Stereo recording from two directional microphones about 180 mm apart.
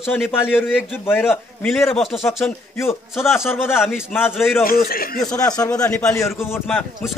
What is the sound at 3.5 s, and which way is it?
Speech, 15° left (ahead or behind).